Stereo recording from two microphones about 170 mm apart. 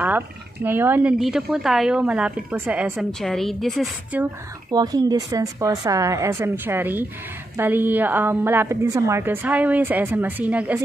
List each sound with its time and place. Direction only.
0.7 s a woman's voice: 10° right (ahead or behind)
4.6 s a woman's voice: 20° right (ahead or behind)